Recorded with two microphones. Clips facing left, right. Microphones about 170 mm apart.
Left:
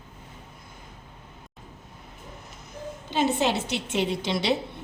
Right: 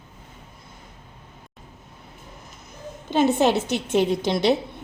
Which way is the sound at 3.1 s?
50° right (ahead or behind).